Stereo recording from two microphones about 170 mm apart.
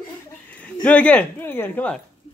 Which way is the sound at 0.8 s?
10° left (ahead or behind).